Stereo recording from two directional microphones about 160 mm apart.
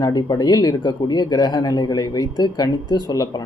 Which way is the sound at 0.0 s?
25° left (ahead or behind).